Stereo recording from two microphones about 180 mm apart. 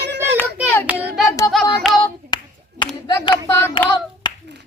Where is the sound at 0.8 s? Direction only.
10° right (ahead or behind).